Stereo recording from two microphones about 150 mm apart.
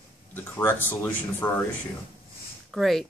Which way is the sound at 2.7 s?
Centre (ahead or behind).